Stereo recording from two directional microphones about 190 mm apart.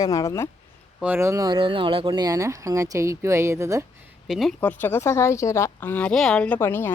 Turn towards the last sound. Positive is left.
turn(degrees=10)  # may be behind; listen again after turning